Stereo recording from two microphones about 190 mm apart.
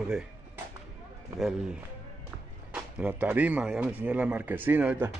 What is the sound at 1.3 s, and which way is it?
A man's voice, centre (ahead or behind).